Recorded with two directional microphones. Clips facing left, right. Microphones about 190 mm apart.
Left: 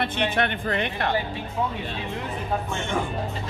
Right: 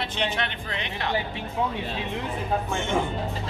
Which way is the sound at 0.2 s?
55° left (ahead or behind).